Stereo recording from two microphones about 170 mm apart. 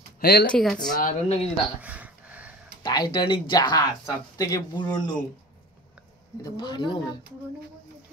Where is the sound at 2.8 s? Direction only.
25° left (ahead or behind).